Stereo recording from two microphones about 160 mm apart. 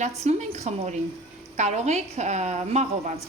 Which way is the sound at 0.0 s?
45° right (ahead or behind).